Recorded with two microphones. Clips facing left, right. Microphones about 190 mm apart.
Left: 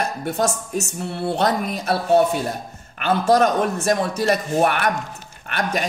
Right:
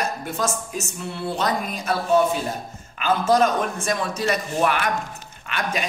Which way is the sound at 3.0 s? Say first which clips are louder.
Left 2 dB; 60° left (ahead or behind).